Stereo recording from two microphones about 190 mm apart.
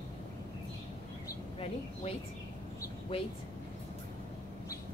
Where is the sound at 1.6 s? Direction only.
30° left (ahead or behind).